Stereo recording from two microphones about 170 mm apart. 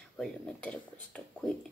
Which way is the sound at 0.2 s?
5° left (ahead or behind).